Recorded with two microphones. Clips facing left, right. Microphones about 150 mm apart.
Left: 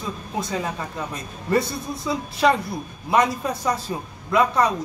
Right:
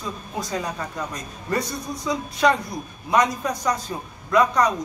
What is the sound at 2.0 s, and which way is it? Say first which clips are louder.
Speech: even; 5° left (ahead or behind).